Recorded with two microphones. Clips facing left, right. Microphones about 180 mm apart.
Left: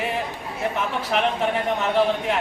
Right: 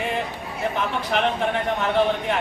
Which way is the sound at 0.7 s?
Centre (ahead or behind).